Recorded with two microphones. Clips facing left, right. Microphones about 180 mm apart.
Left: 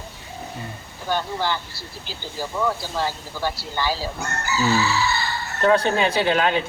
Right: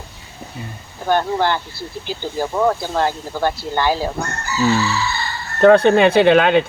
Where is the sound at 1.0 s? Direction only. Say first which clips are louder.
Right 7 dB; 55° right (ahead or behind).